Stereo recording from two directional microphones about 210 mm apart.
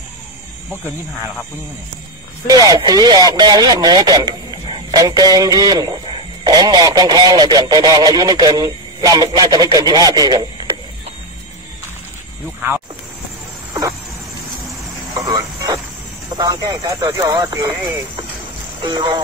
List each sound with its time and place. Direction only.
2.4 s speech: 20° right (ahead or behind)
15.1 s radio: 15° right (ahead or behind)
16.3 s speech: 15° right (ahead or behind)
18.8 s speech: 20° right (ahead or behind)